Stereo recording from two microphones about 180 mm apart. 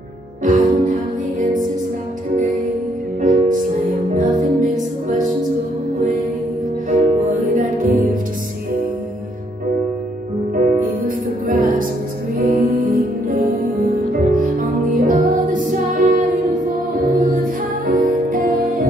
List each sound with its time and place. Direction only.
0.4 s music: 45° right (ahead or behind)
3.2 s music: 45° right (ahead or behind)
6.9 s music: 45° right (ahead or behind)
10.7 s music: 50° right (ahead or behind)